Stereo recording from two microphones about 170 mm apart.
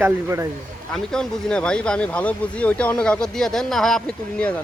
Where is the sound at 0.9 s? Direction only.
5° left (ahead or behind).